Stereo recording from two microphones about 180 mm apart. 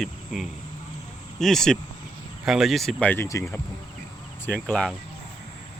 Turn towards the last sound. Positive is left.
turn(degrees=5)  # may be behind; listen again after turning